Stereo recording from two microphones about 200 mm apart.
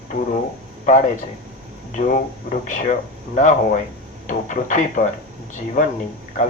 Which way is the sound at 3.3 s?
40° left (ahead or behind).